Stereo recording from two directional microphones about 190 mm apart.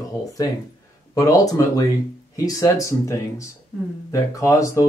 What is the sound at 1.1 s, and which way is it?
Speech, 20° left (ahead or behind).